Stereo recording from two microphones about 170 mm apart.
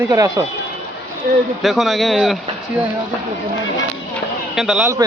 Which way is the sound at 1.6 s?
Centre (ahead or behind).